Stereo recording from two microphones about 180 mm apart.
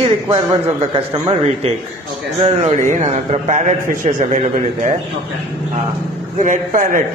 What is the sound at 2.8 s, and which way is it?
A man's voice, 40° right (ahead or behind).